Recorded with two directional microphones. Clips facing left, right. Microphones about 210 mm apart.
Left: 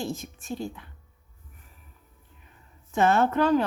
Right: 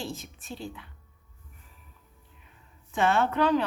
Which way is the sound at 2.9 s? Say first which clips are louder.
Left 3 dB; 40° left (ahead or behind).